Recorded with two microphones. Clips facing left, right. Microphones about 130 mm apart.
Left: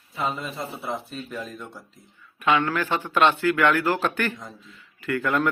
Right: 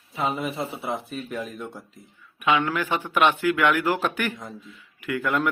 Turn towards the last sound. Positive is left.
turn(degrees=-10)  # may be behind; listen again after turning